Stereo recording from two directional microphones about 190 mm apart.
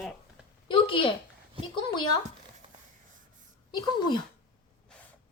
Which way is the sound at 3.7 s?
25° left (ahead or behind).